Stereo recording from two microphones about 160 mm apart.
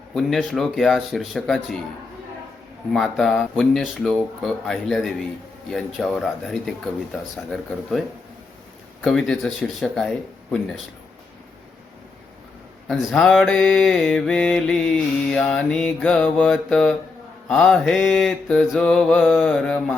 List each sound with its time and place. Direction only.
0.1 s mantra: centre (ahead or behind)
2.9 s mantra: centre (ahead or behind)
9.0 s mantra: 5° left (ahead or behind)
12.9 s mantra: centre (ahead or behind)